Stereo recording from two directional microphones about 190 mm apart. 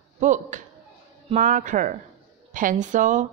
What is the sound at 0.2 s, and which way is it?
A woman's voice, 40° right (ahead or behind).